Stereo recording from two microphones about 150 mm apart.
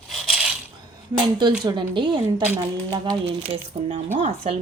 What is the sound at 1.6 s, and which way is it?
Speech, 30° right (ahead or behind).